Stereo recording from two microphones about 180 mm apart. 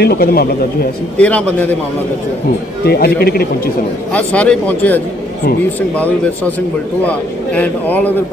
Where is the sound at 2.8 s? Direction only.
60° left (ahead or behind).